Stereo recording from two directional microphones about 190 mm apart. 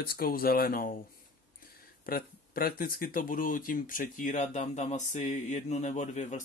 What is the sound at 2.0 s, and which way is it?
Speech, 50° left (ahead or behind).